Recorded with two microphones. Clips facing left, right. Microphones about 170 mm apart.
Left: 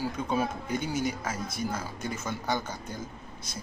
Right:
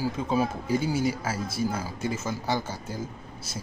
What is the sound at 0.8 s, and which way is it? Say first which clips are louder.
Speech: right 4 dB; 30° right (ahead or behind).